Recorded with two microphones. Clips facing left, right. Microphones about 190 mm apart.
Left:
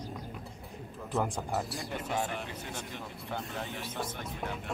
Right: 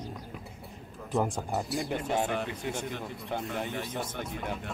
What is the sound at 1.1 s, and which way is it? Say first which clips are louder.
Speech: right 3 dB; 15° right (ahead or behind).